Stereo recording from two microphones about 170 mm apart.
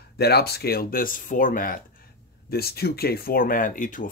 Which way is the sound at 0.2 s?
70° left (ahead or behind).